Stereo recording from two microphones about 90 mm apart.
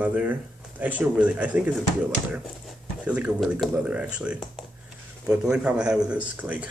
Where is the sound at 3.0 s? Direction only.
15° right (ahead or behind).